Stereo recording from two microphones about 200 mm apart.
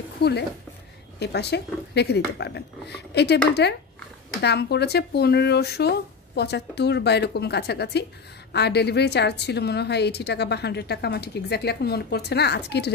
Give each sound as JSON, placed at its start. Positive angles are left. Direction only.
{"t": 0.2, "sound": "a woman's voice", "side_deg": 55}